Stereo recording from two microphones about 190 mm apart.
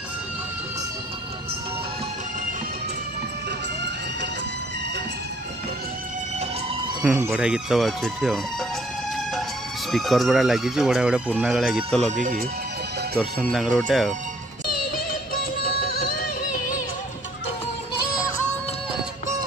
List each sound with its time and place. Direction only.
7.0 s speech: 5° right (ahead or behind)
9.8 s speech: centre (ahead or behind)
12.1 s speech: 45° right (ahead or behind)
13.2 s speech: centre (ahead or behind)
15.3 s music: 50° left (ahead or behind)